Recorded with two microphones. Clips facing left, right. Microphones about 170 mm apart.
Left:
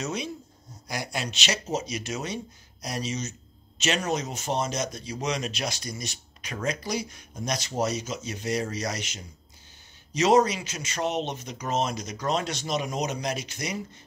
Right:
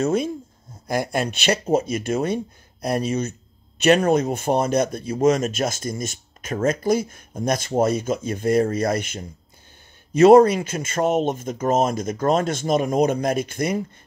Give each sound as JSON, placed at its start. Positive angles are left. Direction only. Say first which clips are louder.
{"t": 0.0, "sound": "speech", "louder": "right 11 dB", "side_deg": -50}